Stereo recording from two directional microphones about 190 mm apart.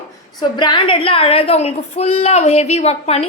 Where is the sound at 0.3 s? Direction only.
25° left (ahead or behind).